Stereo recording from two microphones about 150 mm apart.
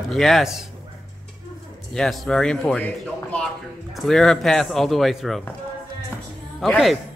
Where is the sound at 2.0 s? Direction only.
5° left (ahead or behind).